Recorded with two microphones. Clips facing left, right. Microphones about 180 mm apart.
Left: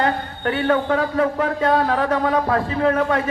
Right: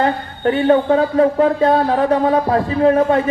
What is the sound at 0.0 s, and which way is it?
A man's voice, 30° right (ahead or behind).